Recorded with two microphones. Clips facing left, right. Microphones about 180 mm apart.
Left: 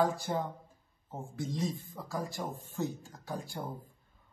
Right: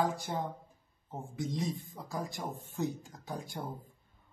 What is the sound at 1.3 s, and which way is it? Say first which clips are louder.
Speech: even; 20° right (ahead or behind).